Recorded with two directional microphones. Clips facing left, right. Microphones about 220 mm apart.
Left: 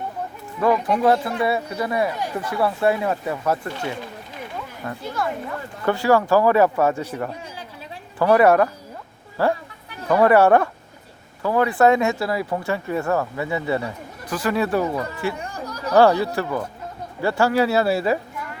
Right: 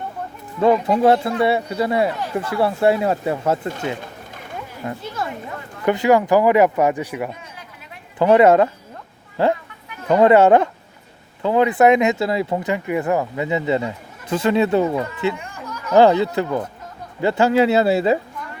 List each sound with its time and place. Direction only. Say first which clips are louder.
0.6 s speech: right 3 dB; 25° right (ahead or behind)
15.4 s a sound: left 2 dB; 35° left (ahead or behind)
16.0 s speech: right 2 dB; 20° right (ahead or behind)